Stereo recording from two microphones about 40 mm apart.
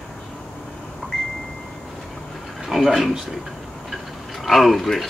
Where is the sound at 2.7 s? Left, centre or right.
Centre.